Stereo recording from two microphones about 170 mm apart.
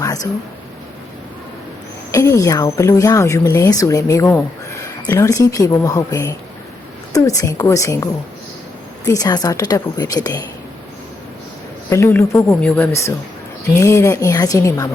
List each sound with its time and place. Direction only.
0.0 s a sound: 20° left (ahead or behind)
2.1 s a woman's voice: 20° left (ahead or behind)
11.9 s speech: 15° left (ahead or behind)